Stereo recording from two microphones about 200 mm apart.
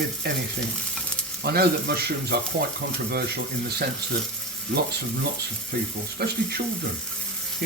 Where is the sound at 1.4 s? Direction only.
50° right (ahead or behind).